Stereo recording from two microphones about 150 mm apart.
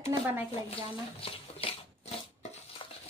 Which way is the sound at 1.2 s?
40° left (ahead or behind).